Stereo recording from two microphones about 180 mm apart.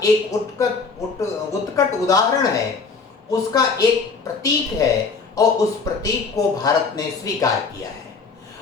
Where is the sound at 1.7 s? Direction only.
20° left (ahead or behind).